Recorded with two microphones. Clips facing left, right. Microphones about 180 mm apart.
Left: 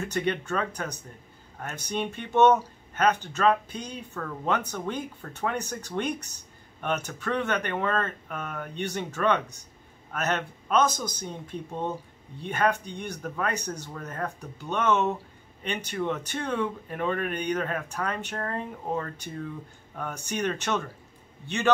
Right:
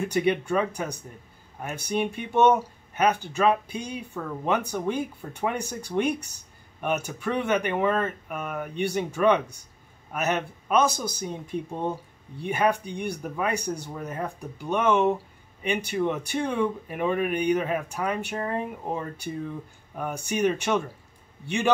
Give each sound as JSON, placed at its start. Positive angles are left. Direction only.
{"t": 0.0, "sound": "speech", "side_deg": -10}